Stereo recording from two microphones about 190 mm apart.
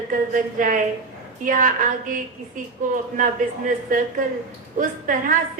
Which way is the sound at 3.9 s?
45° right (ahead or behind).